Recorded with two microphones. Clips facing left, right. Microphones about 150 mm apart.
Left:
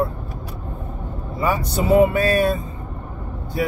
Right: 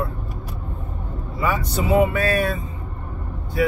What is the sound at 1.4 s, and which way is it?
Speech, 35° left (ahead or behind).